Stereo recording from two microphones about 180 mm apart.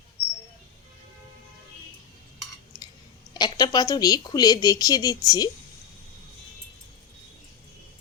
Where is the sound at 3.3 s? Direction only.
20° left (ahead or behind).